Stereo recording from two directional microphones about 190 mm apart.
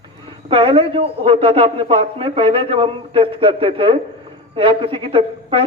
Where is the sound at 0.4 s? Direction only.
25° right (ahead or behind).